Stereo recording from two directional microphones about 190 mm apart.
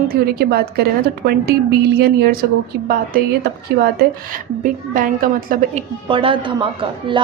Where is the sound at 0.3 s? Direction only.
55° right (ahead or behind).